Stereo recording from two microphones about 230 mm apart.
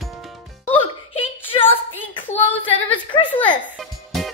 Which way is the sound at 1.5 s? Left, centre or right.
Left.